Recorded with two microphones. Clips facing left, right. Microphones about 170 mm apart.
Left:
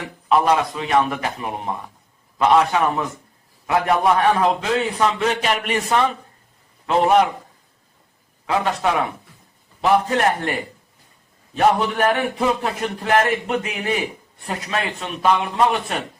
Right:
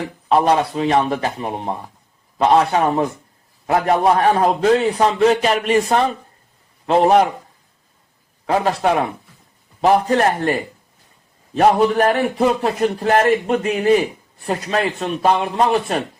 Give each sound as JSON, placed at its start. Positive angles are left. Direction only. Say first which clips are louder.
{"t": 0.0, "sound": "a man's voice", "louder": "right 2 dB", "side_deg": -35}
{"t": 8.4, "sound": "a man's voice", "louder": "right 3 dB", "side_deg": -35}